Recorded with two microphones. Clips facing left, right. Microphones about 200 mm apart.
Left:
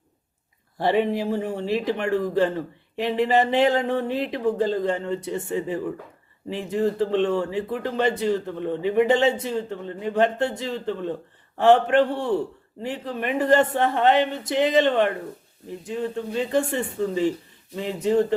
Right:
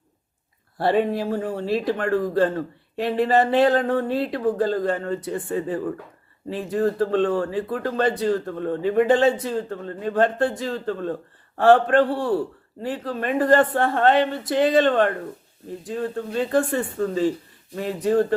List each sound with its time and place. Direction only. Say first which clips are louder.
0.8 s a man's voice: right 1 dB; 15° left (ahead or behind)